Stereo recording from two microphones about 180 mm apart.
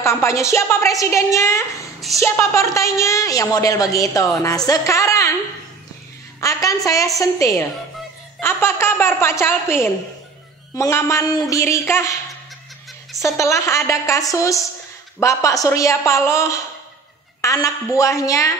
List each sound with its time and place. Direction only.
0.0 s a woman's voice: 15° left (ahead or behind)
2.0 s a sound: centre (ahead or behind)
2.2 s a woman's voice: 15° left (ahead or behind)
6.4 s a woman's voice: 20° left (ahead or behind)
13.2 s a woman's voice: 15° left (ahead or behind)